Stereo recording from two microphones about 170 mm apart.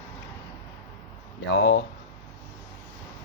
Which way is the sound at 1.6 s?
90° left.